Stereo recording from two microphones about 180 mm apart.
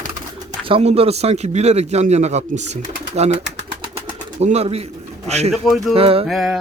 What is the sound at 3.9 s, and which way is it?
Bird, 35° right (ahead or behind).